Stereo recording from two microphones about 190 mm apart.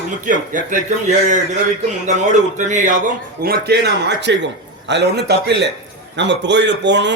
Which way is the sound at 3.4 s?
60° right (ahead or behind).